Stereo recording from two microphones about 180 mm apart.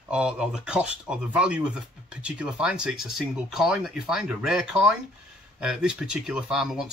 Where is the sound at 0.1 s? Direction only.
5° right (ahead or behind).